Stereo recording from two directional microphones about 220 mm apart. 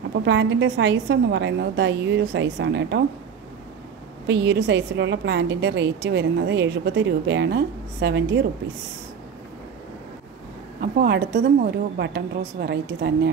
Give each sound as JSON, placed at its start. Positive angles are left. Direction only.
{"t": 0.2, "sound": "a woman's voice", "side_deg": -55}
{"t": 4.3, "sound": "a woman's voice", "side_deg": -50}
{"t": 10.8, "sound": "a woman's voice", "side_deg": -45}